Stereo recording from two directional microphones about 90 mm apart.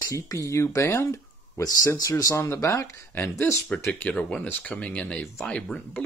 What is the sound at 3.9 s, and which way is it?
Speech, 15° left (ahead or behind).